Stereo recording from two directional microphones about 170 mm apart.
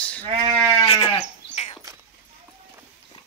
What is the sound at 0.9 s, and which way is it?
Sheep, 30° left (ahead or behind).